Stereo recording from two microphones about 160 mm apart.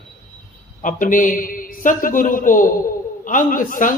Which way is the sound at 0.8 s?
55° left (ahead or behind).